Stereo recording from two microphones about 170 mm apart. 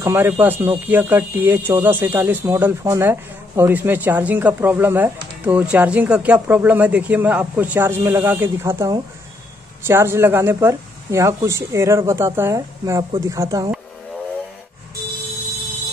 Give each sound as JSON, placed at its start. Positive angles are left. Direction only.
{"t": 0.0, "sound": "speech", "side_deg": -15}